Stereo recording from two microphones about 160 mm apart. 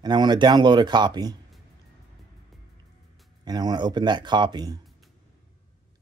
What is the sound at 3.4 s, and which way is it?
Speech, 25° right (ahead or behind).